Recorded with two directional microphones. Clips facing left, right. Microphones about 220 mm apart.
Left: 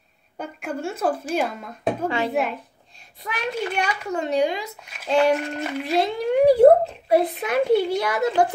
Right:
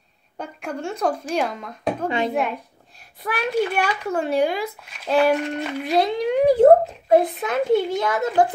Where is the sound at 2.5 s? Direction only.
5° right (ahead or behind).